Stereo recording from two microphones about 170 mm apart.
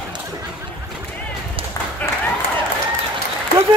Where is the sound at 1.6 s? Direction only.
30° right (ahead or behind).